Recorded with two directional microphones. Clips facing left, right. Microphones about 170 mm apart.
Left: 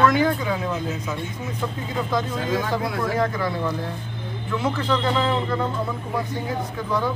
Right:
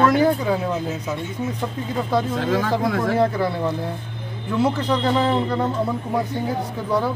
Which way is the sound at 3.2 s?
30° right (ahead or behind).